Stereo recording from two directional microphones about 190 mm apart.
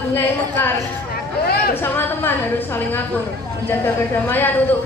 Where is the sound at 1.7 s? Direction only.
10° left (ahead or behind).